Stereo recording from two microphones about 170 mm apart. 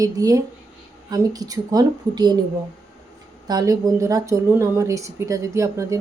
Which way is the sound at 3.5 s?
20° right (ahead or behind).